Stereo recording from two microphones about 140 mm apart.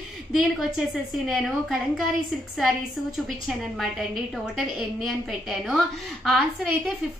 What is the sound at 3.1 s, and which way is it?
A woman's voice, centre (ahead or behind).